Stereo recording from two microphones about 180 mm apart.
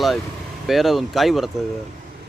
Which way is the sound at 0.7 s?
Centre (ahead or behind).